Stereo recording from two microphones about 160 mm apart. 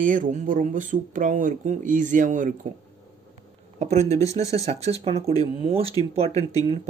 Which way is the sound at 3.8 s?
45° right (ahead or behind).